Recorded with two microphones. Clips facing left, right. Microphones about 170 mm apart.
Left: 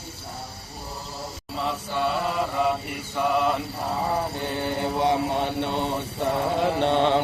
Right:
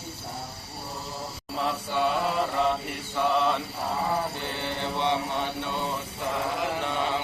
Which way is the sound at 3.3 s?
10° left (ahead or behind).